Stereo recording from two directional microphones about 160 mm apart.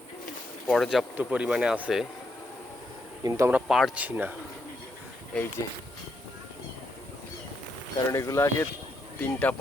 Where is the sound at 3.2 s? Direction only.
20° right (ahead or behind).